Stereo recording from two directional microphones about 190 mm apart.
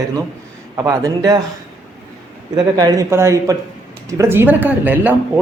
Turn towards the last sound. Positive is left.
turn(degrees=-10)  # may be behind; listen again after turning